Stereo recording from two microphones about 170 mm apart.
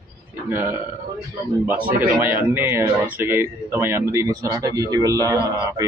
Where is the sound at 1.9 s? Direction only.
10° right (ahead or behind).